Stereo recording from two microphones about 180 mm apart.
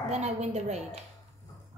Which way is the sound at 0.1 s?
40° right (ahead or behind).